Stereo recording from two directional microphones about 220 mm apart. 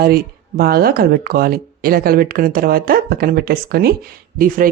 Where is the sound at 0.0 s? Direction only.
45° right (ahead or behind).